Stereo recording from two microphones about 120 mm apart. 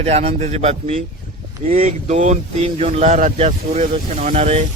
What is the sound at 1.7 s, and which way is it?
Speech, 80° right.